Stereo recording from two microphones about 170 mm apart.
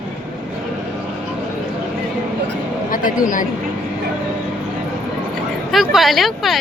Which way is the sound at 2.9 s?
55° left (ahead or behind).